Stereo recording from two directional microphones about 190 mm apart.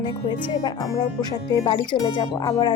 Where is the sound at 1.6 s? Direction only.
25° left (ahead or behind).